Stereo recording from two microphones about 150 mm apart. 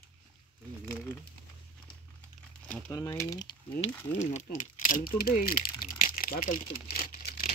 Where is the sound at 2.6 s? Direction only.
10° left (ahead or behind).